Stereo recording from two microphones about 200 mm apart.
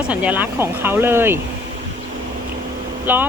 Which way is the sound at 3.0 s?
10° right (ahead or behind).